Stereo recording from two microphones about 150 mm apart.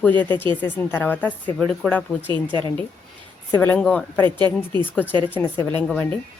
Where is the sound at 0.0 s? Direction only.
10° left (ahead or behind).